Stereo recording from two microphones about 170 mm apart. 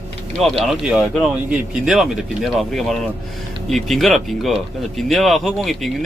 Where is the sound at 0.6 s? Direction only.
Centre (ahead or behind).